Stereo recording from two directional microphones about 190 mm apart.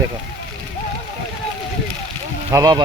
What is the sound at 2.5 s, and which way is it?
Speech, 20° right (ahead or behind).